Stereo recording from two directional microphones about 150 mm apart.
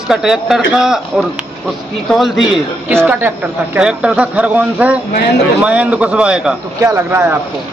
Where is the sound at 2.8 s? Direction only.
10° right (ahead or behind).